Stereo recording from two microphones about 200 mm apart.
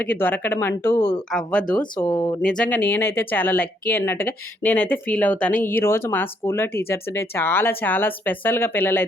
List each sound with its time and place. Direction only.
0.0 s speech: 10° left (ahead or behind)
2.0 s speech: 20° left (ahead or behind)
2.4 s speech: 5° left (ahead or behind)